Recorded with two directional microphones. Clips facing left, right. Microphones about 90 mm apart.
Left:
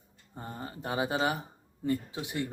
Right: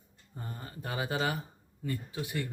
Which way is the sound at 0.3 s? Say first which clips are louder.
Left 3 dB; 25° left (ahead or behind).